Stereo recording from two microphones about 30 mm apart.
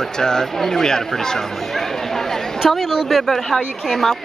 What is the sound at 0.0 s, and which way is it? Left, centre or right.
Speech, centre.